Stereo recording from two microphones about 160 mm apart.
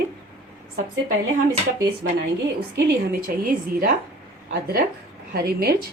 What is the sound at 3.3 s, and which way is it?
Speech, 65° right (ahead or behind).